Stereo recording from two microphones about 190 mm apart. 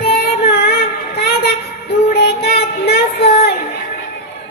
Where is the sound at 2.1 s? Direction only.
55° left (ahead or behind).